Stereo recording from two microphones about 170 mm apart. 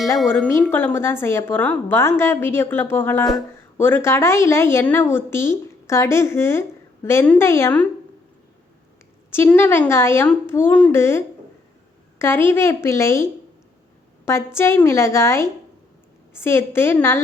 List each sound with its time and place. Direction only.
0.5 s a woman's voice: 15° left (ahead or behind)
9.3 s a woman's voice: 15° left (ahead or behind)
12.2 s a woman's voice: 15° left (ahead or behind)
14.3 s a woman's voice: 15° left (ahead or behind)